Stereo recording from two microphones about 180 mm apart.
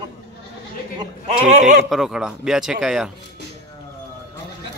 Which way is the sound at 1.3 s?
40° right (ahead or behind).